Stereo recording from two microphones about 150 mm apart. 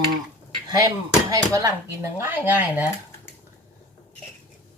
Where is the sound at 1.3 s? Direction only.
20° right (ahead or behind).